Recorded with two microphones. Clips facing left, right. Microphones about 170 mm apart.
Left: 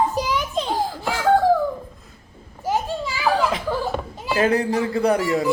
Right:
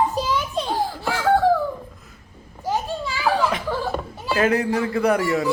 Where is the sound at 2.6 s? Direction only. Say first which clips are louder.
Left 1 dB; 15° left (ahead or behind).